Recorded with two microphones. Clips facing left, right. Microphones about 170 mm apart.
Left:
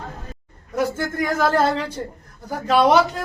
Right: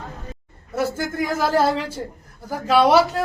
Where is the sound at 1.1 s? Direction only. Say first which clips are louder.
Left 1 dB; 5° right (ahead or behind).